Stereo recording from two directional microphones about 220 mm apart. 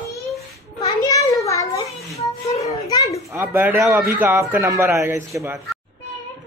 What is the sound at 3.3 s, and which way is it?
Speech, 10° right (ahead or behind).